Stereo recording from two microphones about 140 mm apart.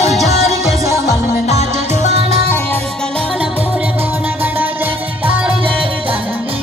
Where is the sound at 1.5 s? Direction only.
55° left (ahead or behind).